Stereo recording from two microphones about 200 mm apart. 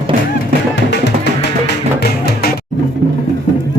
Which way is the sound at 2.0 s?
50° left (ahead or behind).